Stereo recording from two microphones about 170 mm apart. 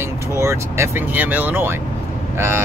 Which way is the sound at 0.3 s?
15° right (ahead or behind).